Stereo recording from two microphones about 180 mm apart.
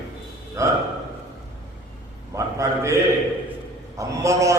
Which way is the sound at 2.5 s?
15° right (ahead or behind).